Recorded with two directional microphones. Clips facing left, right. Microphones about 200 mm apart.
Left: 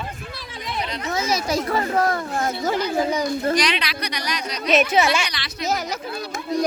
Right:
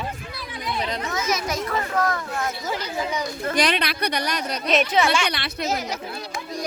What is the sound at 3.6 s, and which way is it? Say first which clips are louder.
A woman's voice: right 1 dB; 55° right (ahead or behind).